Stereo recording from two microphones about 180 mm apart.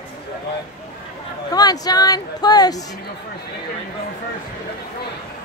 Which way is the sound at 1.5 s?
20° left (ahead or behind).